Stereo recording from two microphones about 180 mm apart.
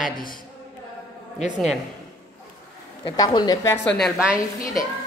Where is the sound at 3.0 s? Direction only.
25° left (ahead or behind).